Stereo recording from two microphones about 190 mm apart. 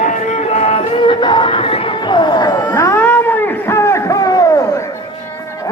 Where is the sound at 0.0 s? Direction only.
40° left (ahead or behind); by 4.6 s 20° left (ahead or behind).